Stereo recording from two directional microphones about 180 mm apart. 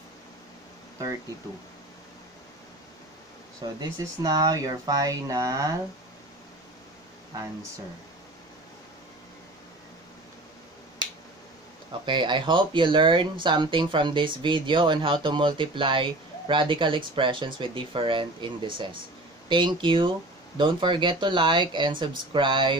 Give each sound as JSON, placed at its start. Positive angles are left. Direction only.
{"t": 3.6, "sound": "speech", "side_deg": -25}
{"t": 11.9, "sound": "speech", "side_deg": -25}